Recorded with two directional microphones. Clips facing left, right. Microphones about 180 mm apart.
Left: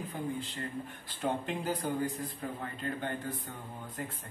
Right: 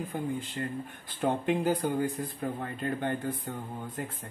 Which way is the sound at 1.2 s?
55° right (ahead or behind).